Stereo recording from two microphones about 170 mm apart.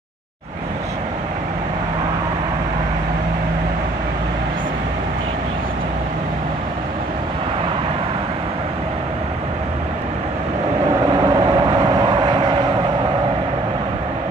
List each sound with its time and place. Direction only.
11.1 s vehicle: 30° right (ahead or behind)